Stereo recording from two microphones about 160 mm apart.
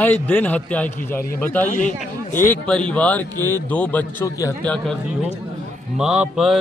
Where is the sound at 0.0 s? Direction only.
10° left (ahead or behind).